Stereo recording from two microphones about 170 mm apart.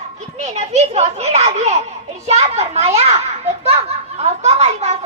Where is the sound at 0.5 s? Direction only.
40° right (ahead or behind).